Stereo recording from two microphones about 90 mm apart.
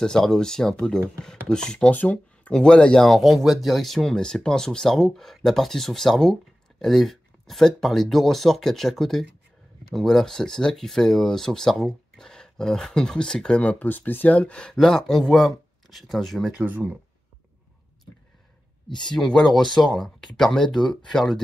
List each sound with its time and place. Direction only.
0.0 s speech: 5° left (ahead or behind)
16.5 s speech: 20° right (ahead or behind)
18.9 s speech: 5° left (ahead or behind)